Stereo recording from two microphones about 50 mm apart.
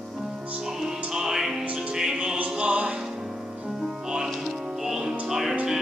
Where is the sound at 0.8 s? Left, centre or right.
Centre.